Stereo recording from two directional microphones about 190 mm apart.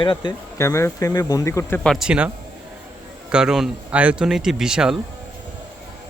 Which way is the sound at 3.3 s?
5° right (ahead or behind).